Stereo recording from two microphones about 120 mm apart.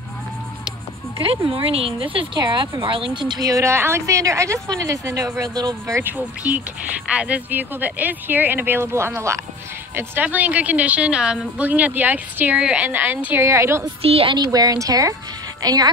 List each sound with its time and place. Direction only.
1.2 s a woman's voice: 50° right (ahead or behind)
5.9 s a woman's voice: 15° right (ahead or behind)
14.0 s speech: 55° right (ahead or behind)
14.3 s speech: 35° right (ahead or behind)